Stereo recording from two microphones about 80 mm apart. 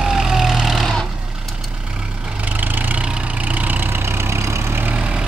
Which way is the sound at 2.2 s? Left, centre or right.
Centre.